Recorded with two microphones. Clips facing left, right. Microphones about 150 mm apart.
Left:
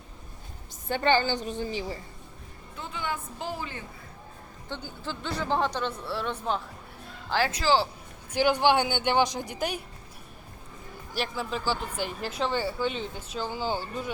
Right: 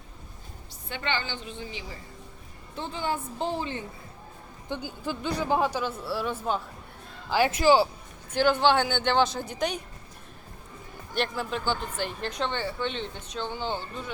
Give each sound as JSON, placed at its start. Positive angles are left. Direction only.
{"t": 0.9, "sound": "a woman's voice", "side_deg": 40}
{"t": 2.7, "sound": "a woman's voice", "side_deg": -30}
{"t": 4.7, "sound": "speech", "side_deg": -15}
{"t": 7.4, "sound": "speech", "side_deg": -20}
{"t": 8.3, "sound": "speech", "side_deg": 10}
{"t": 11.1, "sound": "speech", "side_deg": 0}